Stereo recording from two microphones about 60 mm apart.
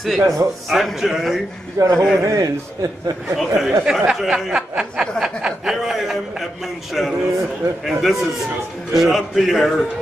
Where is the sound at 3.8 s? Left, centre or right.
Centre.